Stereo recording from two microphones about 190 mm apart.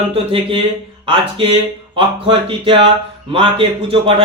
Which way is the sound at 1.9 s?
25° right (ahead or behind).